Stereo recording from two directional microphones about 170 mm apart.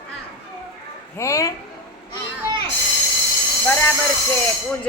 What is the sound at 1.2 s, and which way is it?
Speech, 20° left (ahead or behind).